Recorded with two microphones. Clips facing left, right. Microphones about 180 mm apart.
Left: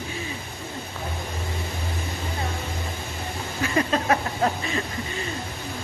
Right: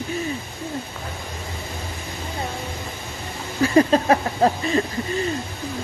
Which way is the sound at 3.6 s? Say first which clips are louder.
Right 7 dB; 35° right (ahead or behind).